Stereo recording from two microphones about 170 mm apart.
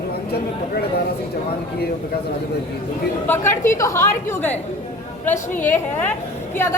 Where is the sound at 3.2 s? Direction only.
15° left (ahead or behind).